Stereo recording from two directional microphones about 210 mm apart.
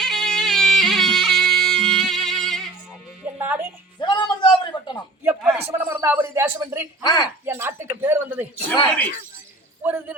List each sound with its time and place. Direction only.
0.0 s bagpipes: centre (ahead or behind)
3.2 s music: 10° right (ahead or behind)
4.0 s a sound: 20° left (ahead or behind)
5.2 s a sound: 5° right (ahead or behind)
5.6 s speech: 10° right (ahead or behind)
7.0 s speech: 20° left (ahead or behind)
7.4 s speech: 10° right (ahead or behind)
9.8 s speech: 10° right (ahead or behind)